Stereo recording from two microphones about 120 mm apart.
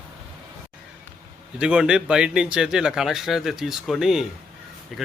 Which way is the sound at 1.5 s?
10° right (ahead or behind).